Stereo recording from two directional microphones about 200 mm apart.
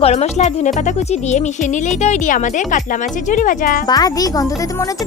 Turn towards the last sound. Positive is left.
turn(degrees=20)  # may be behind; listen again after turning